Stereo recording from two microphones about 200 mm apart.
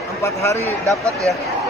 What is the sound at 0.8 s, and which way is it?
Speech, 15° right (ahead or behind).